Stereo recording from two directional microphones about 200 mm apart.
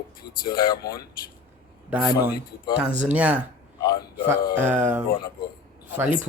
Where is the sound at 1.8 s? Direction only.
5° right (ahead or behind).